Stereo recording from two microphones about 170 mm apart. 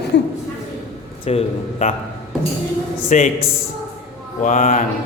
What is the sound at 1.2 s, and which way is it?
Speech, 40° left (ahead or behind).